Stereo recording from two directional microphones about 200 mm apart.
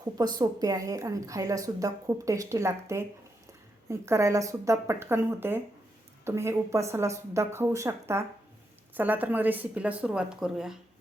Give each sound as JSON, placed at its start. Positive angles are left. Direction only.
{"t": 0.0, "sound": "a woman's voice", "side_deg": -20}